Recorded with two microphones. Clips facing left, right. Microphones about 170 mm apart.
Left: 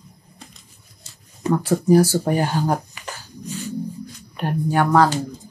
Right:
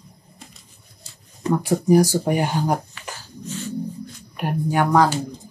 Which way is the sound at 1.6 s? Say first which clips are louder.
Left 1 dB; 15° right (ahead or behind).